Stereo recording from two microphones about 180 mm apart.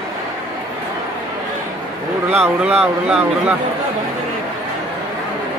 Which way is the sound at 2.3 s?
5° right (ahead or behind).